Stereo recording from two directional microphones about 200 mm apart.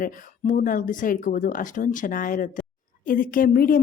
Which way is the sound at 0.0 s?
40° left (ahead or behind).